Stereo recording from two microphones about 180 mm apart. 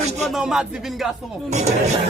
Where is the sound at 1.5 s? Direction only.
40° right (ahead or behind).